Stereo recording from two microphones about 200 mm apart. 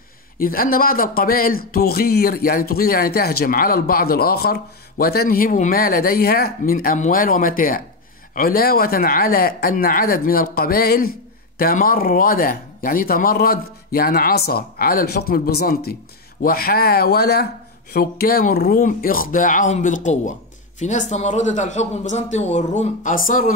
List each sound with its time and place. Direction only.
0.4 s speech: 45° left (ahead or behind)